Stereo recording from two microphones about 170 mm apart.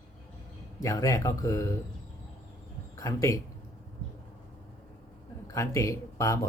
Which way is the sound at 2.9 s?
20° left (ahead or behind).